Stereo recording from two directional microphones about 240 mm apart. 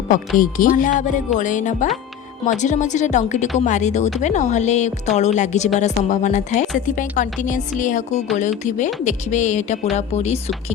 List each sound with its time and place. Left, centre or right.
0.3 s a woman's voice: left